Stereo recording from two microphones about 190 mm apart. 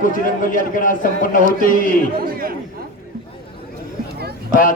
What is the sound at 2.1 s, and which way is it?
Speech, 50° right (ahead or behind).